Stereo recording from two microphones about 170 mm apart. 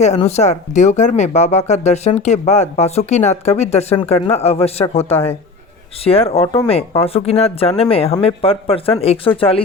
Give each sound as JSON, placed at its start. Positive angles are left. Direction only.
{"t": 0.0, "sound": "speech", "side_deg": 40}
{"t": 5.1, "sound": "speech", "side_deg": 10}
{"t": 6.1, "sound": "speech", "side_deg": 35}